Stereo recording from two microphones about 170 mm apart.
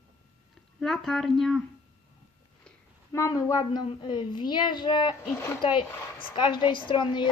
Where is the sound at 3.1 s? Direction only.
20° left (ahead or behind).